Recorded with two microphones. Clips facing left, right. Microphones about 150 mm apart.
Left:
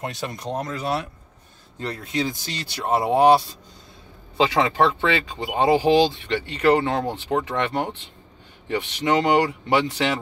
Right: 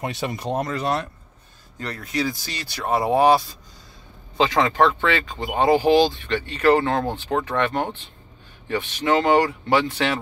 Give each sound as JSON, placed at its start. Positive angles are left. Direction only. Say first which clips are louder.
{"t": 0.0, "sound": "speech", "louder": "right 3 dB", "side_deg": -5}
{"t": 1.8, "sound": "speech", "louder": "even", "side_deg": 25}